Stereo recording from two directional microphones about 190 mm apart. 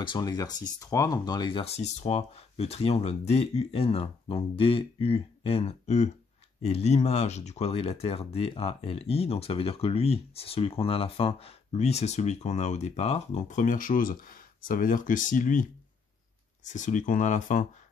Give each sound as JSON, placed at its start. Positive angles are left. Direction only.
{"t": 0.0, "sound": "speech", "side_deg": 25}
{"t": 16.6, "sound": "speech", "side_deg": 40}